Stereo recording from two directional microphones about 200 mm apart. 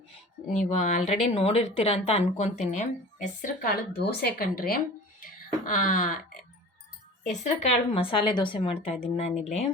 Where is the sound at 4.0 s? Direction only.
50° left (ahead or behind).